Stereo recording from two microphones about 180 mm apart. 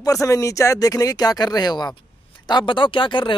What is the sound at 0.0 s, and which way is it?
Speech, 20° left (ahead or behind).